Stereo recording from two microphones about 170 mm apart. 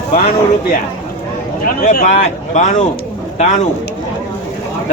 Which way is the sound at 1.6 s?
55° left (ahead or behind).